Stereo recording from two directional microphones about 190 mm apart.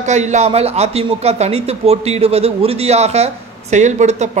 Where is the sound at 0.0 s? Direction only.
40° right (ahead or behind).